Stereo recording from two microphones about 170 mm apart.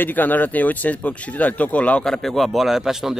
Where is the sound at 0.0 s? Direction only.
10° left (ahead or behind).